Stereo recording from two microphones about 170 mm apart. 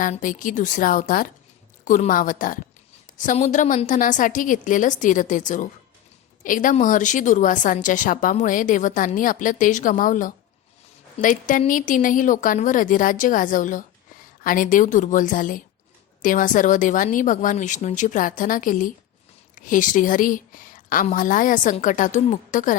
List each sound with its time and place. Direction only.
0.0 s a woman's voice: 50° left (ahead or behind)